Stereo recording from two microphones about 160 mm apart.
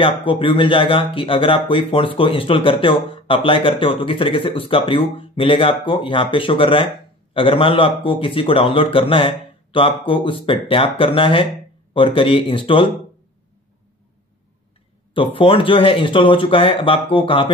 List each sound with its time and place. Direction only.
0.0 s speech: 35° left (ahead or behind)
15.1 s speech: 35° left (ahead or behind)